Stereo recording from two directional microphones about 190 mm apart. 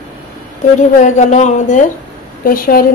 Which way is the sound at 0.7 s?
40° left (ahead or behind).